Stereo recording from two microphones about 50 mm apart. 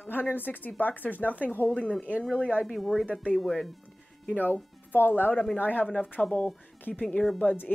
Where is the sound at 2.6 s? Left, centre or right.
Centre.